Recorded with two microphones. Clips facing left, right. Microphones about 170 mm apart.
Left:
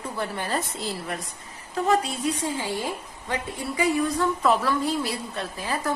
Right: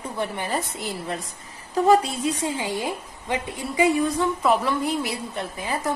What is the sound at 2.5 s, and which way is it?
A woman's voice, 15° right (ahead or behind).